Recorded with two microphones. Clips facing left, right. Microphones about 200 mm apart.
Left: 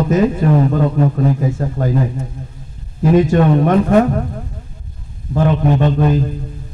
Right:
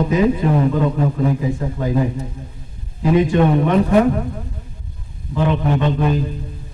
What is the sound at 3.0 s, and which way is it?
Speech, 45° left (ahead or behind).